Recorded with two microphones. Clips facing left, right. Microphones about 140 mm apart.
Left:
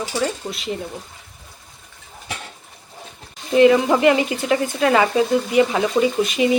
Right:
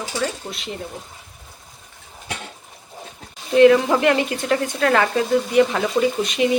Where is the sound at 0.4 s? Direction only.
5° right (ahead or behind).